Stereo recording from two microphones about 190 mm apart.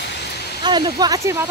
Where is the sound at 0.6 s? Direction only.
20° right (ahead or behind).